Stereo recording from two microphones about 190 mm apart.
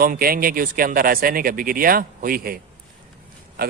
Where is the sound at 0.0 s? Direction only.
50° right (ahead or behind).